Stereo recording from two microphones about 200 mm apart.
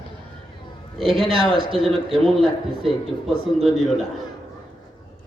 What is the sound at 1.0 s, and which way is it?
A man's voice, centre (ahead or behind).